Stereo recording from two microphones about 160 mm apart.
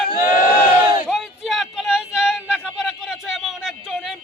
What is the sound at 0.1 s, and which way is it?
Crowd, 65° left (ahead or behind).